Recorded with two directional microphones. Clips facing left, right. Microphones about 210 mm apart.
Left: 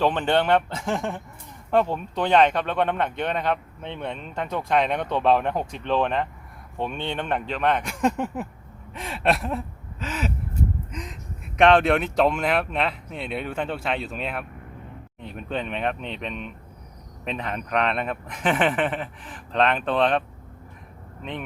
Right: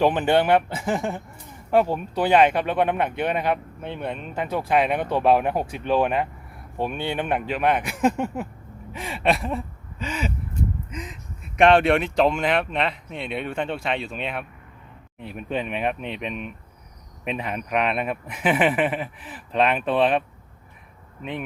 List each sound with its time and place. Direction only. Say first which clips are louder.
0.0 s speech: right 2 dB; 10° right (ahead or behind)
8.9 s gasp: right 1 dB; centre (ahead or behind)
10.9 s speech: even; centre (ahead or behind)